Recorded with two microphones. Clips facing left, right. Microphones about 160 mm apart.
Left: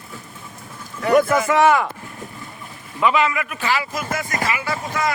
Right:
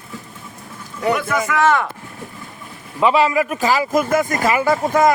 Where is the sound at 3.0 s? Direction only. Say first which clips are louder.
Right 4 dB; 30° right (ahead or behind).